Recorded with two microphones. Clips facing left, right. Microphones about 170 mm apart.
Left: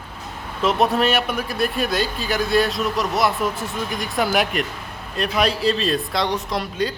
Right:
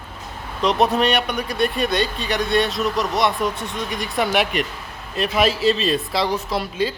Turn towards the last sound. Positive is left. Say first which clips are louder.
# right 1 dB
turn(degrees=0)  # may be behind; listen again after turning